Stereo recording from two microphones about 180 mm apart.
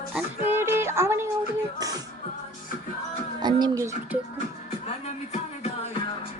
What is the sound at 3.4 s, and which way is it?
Music, 20° right (ahead or behind).